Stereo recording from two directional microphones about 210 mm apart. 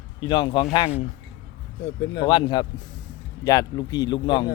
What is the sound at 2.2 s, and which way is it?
Speech, 25° left (ahead or behind).